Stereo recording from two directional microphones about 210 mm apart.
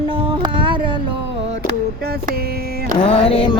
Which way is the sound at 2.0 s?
45° right (ahead or behind).